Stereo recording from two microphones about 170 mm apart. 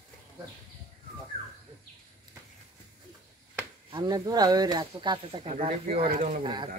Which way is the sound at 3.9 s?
25° right (ahead or behind).